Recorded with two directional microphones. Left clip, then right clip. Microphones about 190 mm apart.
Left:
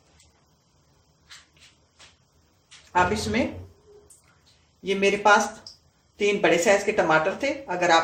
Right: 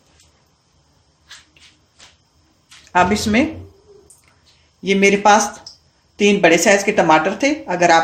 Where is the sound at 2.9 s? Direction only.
50° right (ahead or behind).